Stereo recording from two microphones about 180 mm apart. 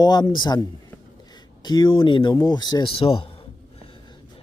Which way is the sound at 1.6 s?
25° left (ahead or behind).